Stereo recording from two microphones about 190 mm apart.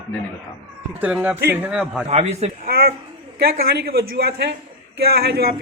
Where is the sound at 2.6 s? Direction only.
50° right (ahead or behind).